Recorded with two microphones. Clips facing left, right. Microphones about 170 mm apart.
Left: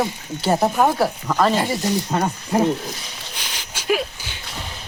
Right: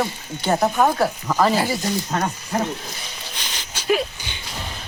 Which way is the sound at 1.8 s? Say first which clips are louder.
Left 2 dB; 10° left (ahead or behind).